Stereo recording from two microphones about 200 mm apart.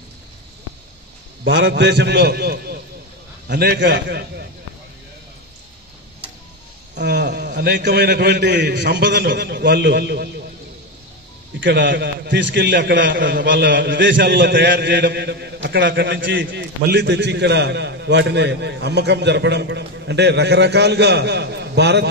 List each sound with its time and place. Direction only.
1.4 s a man's voice: 65° right (ahead or behind)
7.0 s a man's voice: 60° right (ahead or behind)
11.6 s a man's voice: 60° right (ahead or behind)